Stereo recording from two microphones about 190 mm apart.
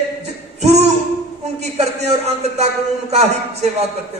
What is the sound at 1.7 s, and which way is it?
A man's voice, 35° right (ahead or behind).